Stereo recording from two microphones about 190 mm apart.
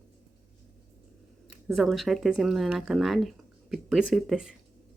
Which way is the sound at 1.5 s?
Centre (ahead or behind).